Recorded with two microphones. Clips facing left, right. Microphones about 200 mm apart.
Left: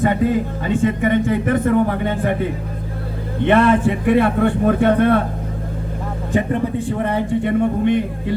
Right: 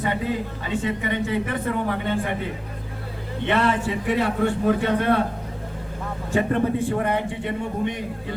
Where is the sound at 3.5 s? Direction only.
55° left (ahead or behind).